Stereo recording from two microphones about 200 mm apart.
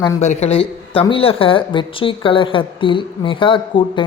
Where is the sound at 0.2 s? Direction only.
35° left (ahead or behind).